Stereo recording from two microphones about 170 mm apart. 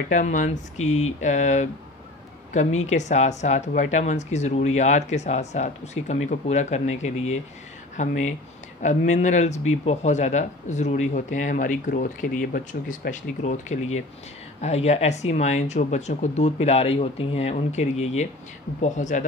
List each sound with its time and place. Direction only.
0.1 s speech: 50° left (ahead or behind)